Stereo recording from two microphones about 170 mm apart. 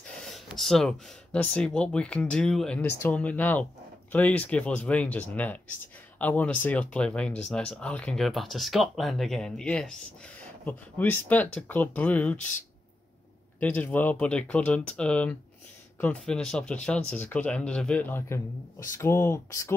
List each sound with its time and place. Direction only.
0.0 s speech: centre (ahead or behind)
13.6 s speech: 10° left (ahead or behind)